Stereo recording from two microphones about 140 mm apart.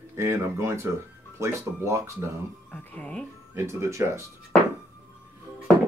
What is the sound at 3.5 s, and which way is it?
Speech, 20° right (ahead or behind).